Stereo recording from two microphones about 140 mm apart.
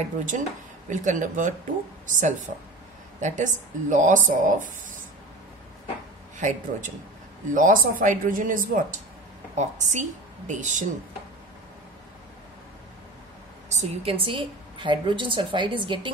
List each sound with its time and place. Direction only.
0.3 s speech: 65° right (ahead or behind)
6.3 s speech: 60° right (ahead or behind)
9.6 s speech: 60° right (ahead or behind)
13.7 s a woman's voice: 55° right (ahead or behind)
14.1 s a woman's voice: 40° right (ahead or behind)